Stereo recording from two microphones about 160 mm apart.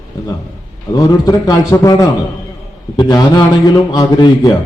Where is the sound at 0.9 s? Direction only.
25° left (ahead or behind).